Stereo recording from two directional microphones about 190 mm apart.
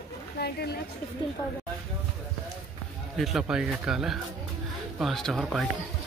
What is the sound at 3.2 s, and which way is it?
Speech, centre (ahead or behind).